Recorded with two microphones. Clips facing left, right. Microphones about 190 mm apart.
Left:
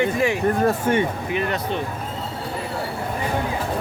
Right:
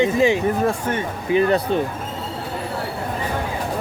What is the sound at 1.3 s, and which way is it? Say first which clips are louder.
Speech: right 10 dB; 35° right (ahead or behind).